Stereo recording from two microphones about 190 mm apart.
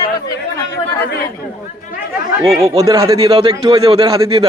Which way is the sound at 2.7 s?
20° right (ahead or behind).